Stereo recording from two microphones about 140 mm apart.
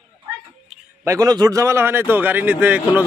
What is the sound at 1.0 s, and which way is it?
A man's voice, 25° right (ahead or behind).